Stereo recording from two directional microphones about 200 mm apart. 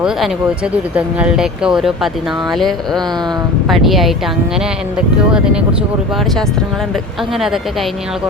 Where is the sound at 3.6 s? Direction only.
Centre (ahead or behind).